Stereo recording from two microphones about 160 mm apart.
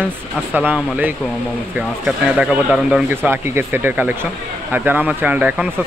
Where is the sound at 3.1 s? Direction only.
15° right (ahead or behind).